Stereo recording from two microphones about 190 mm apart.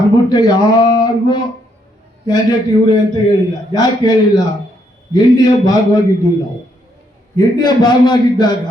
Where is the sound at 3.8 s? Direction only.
20° left (ahead or behind).